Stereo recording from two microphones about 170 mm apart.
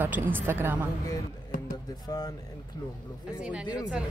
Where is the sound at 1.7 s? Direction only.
20° left (ahead or behind).